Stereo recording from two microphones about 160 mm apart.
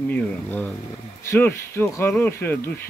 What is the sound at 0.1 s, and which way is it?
Speech, 10° left (ahead or behind).